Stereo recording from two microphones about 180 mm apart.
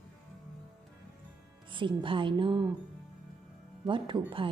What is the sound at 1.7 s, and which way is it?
A woman's voice, 25° right (ahead or behind).